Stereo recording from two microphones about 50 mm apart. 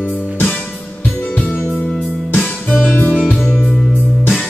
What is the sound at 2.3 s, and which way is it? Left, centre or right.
Music, left.